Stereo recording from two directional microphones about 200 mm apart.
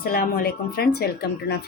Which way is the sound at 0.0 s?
50° left (ahead or behind).